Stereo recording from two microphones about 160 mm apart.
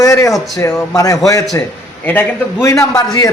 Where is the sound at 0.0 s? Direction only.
20° left (ahead or behind).